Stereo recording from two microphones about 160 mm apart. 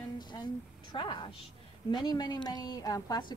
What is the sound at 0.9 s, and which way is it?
A woman's voice, 30° left (ahead or behind).